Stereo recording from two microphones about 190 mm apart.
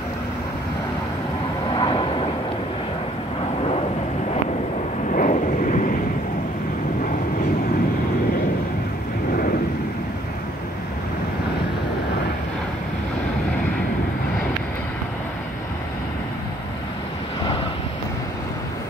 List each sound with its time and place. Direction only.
1.8 s vehicle: 25° left (ahead or behind)
5.1 s vehicle: 40° left (ahead or behind)